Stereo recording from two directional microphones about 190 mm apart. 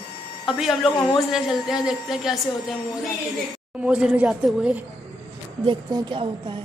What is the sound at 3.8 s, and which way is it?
A woman's voice, 5° right (ahead or behind).